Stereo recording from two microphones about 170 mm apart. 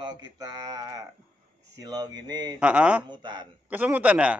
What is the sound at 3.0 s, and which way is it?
Speech, 25° right (ahead or behind).